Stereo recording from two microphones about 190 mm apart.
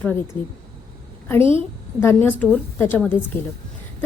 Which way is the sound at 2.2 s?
10° left (ahead or behind).